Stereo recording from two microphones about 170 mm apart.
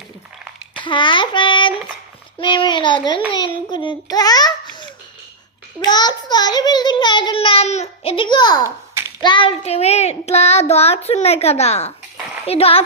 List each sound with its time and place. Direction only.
0.7 s a child's voice: 30° left (ahead or behind)
2.4 s child singing: 30° left (ahead or behind)
3.7 s a child's voice: 25° left (ahead or behind)
5.8 s child singing: 25° left (ahead or behind)
9.2 s a child's voice: 30° left (ahead or behind)